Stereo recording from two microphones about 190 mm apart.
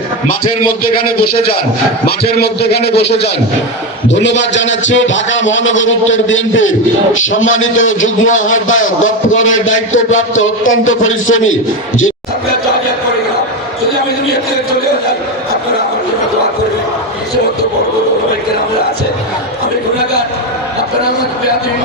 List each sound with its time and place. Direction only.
4.1 s a man's voice: 75° left (ahead or behind); by 11.5 s 90° left